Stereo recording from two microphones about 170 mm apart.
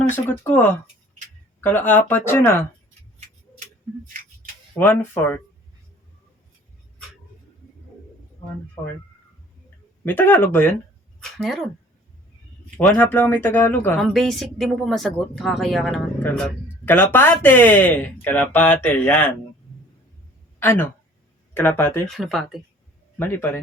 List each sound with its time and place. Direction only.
0.3 s speech: 10° left (ahead or behind)
4.8 s speech: 10° left (ahead or behind)
10.1 s speech: 10° left (ahead or behind)
11.2 s a sound: centre (ahead or behind)
12.7 s speech: 10° left (ahead or behind)
14.0 s speech: centre (ahead or behind)
16.2 s speech: 10° left (ahead or behind)
20.6 s speech: 10° left (ahead or behind)
22.2 s speech: centre (ahead or behind)
23.1 s a man's voice: 10° left (ahead or behind)